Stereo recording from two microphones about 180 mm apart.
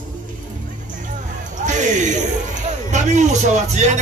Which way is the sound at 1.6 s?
45° right (ahead or behind).